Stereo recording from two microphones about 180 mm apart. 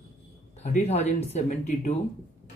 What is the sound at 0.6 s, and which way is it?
Speech, 40° left (ahead or behind).